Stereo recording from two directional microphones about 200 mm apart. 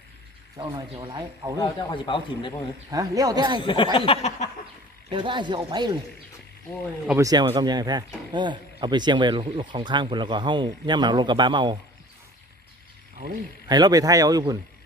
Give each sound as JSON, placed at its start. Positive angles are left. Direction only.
{"t": 0.7, "sound": "speech", "side_deg": -20}
{"t": 1.5, "sound": "speech", "side_deg": 25}
{"t": 2.9, "sound": "speech", "side_deg": -20}
{"t": 3.6, "sound": "speech", "side_deg": 25}
{"t": 5.1, "sound": "speech", "side_deg": -25}
{"t": 7.1, "sound": "speech", "side_deg": -15}
{"t": 13.7, "sound": "speech", "side_deg": -20}